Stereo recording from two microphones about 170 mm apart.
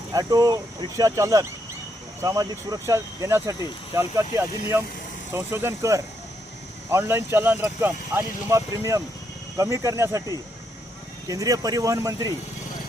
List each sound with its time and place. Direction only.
0.1 s speech: 20° right (ahead or behind)